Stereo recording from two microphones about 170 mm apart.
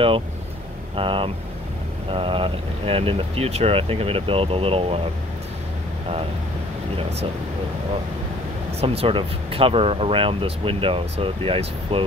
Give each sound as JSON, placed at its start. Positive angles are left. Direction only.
{"t": 0.9, "sound": "speech", "side_deg": -30}
{"t": 8.8, "sound": "speech", "side_deg": -30}